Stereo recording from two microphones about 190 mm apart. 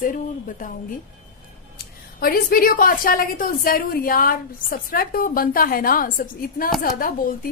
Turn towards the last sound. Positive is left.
turn(degrees=45)  # may be behind; listen again after turning